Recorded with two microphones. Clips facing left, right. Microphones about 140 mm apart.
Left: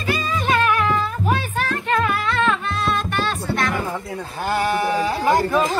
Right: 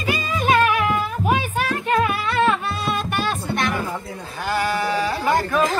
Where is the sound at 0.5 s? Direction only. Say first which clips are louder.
Right 1 dB; 15° right (ahead or behind).